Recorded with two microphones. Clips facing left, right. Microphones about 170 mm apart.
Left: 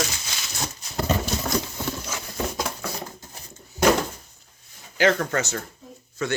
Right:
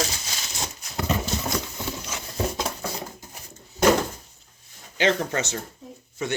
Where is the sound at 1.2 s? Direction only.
20° right (ahead or behind).